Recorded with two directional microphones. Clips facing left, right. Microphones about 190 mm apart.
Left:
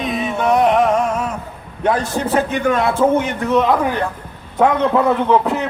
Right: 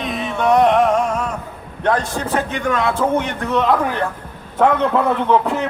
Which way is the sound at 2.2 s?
25° left (ahead or behind).